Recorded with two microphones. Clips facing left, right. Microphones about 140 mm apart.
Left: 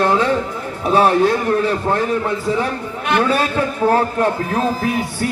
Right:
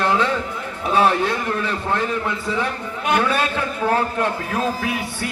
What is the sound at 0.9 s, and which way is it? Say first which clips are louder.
A man's voice: left 4 dB; 40° left (ahead or behind).